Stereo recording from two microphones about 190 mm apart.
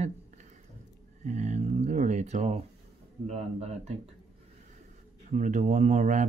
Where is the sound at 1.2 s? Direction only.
40° right (ahead or behind).